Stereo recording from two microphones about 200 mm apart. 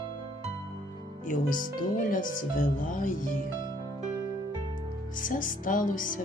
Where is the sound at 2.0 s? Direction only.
40° left (ahead or behind).